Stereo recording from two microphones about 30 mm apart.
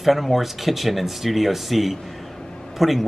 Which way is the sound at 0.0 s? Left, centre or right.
Centre.